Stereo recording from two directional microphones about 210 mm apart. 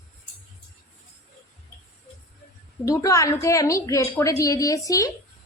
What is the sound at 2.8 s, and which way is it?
A woman's voice, 15° left (ahead or behind).